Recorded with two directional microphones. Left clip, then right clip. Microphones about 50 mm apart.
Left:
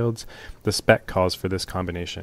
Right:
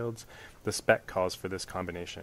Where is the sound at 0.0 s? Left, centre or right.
Centre.